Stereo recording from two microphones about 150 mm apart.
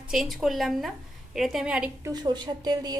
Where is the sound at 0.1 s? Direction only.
Centre (ahead or behind).